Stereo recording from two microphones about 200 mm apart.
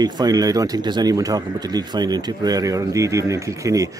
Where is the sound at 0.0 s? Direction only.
20° right (ahead or behind).